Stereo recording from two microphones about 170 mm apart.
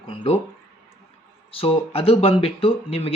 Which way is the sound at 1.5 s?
35° left (ahead or behind).